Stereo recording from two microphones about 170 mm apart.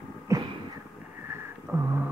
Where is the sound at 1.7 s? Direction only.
15° right (ahead or behind).